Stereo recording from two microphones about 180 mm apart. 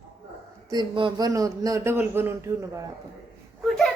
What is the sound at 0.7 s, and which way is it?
A man's voice, 25° right (ahead or behind).